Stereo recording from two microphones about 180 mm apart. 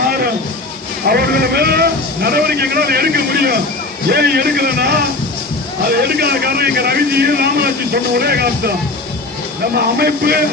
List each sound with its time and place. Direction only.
1.0 s speech: 60° right (ahead or behind)
9.7 s speech: 60° right (ahead or behind)